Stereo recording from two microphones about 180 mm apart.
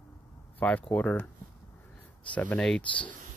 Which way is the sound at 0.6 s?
10° left (ahead or behind).